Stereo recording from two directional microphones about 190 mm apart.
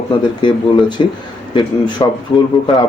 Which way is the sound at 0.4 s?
25° left (ahead or behind).